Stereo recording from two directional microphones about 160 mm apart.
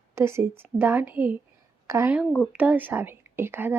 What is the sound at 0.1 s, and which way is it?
A woman's voice, 15° right (ahead or behind).